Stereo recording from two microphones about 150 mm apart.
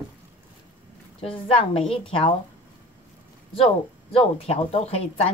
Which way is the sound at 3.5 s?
40° left (ahead or behind).